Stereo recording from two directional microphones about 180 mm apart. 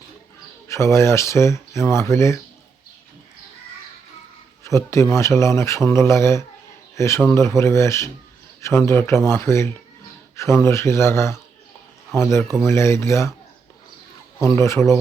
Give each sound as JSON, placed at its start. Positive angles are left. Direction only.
{"t": 0.7, "sound": "speech", "side_deg": 15}
{"t": 4.6, "sound": "speech", "side_deg": 15}
{"t": 14.4, "sound": "speech", "side_deg": 15}